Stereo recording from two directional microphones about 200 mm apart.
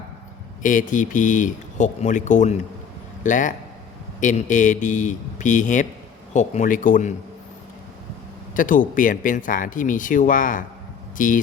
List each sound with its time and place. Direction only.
0.6 s speech: 40° left (ahead or behind)
8.5 s speech: 40° left (ahead or behind)